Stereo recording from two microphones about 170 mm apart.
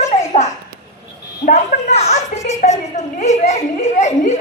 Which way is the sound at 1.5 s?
40° left (ahead or behind).